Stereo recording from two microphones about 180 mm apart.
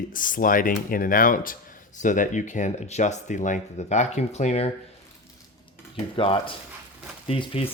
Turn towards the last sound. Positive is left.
turn(degrees=30)  # may be behind; listen again after turning